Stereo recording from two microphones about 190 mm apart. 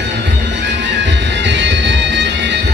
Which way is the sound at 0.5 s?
65° right (ahead or behind).